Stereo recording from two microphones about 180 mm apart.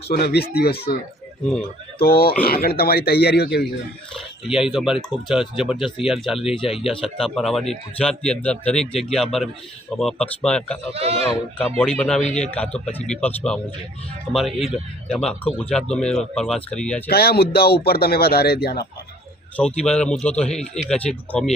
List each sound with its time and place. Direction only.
0.1 s speech: 60° left (ahead or behind)
2.0 s speech: 55° left (ahead or behind)
4.4 s speech: 5° right (ahead or behind)
6.4 s speech: 30° left (ahead or behind)
6.7 s speech: centre (ahead or behind)
10.9 s speech: 35° right (ahead or behind)
11.8 s speech: 5° left (ahead or behind)
17.1 s speech: 60° left (ahead or behind)
19.5 s speech: 5° left (ahead or behind)